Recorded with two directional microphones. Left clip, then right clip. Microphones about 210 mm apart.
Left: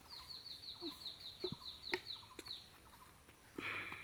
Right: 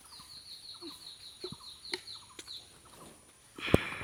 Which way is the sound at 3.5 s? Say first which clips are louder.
Right 14 dB; 5° left (ahead or behind).